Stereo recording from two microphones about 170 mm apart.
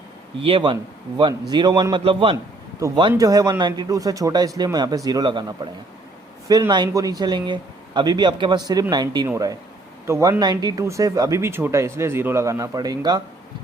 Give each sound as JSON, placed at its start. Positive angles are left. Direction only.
{"t": 0.4, "sound": "speech", "side_deg": -30}